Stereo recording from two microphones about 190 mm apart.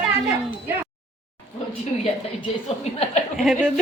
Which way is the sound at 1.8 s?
35° left (ahead or behind).